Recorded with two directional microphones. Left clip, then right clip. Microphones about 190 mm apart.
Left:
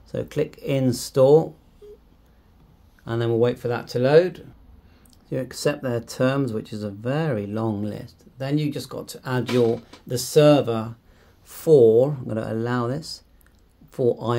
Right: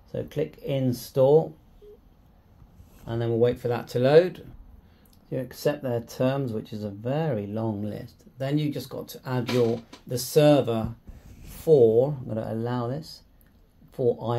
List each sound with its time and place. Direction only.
0.1 s speech: 30° left (ahead or behind)
3.1 s speech: 25° left (ahead or behind); by 4.5 s 10° left (ahead or behind)
5.3 s speech: 20° left (ahead or behind)
11.5 s a sound: 30° left (ahead or behind)
11.9 s speech: 30° left (ahead or behind)